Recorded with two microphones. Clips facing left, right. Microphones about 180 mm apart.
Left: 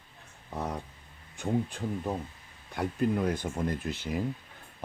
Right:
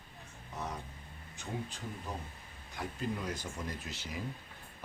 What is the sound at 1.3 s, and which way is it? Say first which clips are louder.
Speech: left 11 dB; 55° left (ahead or behind).